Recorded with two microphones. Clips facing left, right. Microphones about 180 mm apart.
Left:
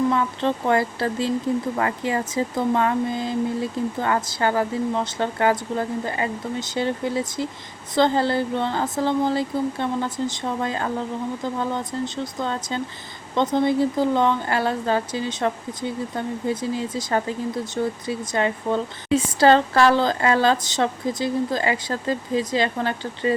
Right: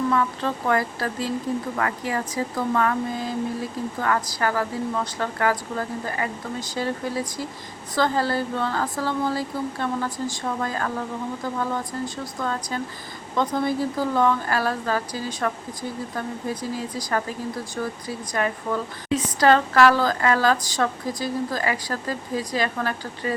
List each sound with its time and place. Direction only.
0.1 s speech: 25° left (ahead or behind)